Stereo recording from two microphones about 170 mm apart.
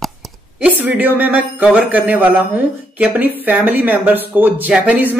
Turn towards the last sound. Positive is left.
turn(degrees=-10)  # may be behind; listen again after turning